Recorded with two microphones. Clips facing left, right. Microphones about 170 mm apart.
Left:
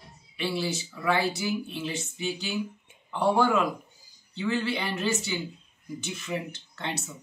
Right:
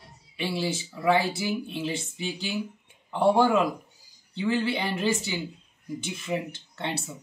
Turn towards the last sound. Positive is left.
turn(degrees=-30)  # may be behind; listen again after turning